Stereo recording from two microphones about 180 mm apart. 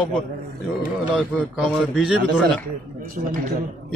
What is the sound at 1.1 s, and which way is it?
A man's voice, 5° right (ahead or behind).